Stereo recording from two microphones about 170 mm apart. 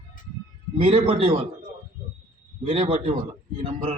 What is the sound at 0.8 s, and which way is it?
Speech, 35° right (ahead or behind).